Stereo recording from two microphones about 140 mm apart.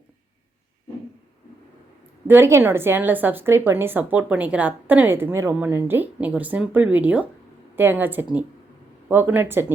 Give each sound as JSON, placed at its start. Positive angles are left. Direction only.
{"t": 2.2, "sound": "a woman's voice", "side_deg": -15}